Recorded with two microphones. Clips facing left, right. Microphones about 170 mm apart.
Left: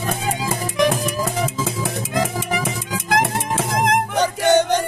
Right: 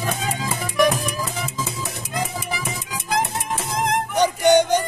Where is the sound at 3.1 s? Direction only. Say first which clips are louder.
Left 3 dB; 80° left.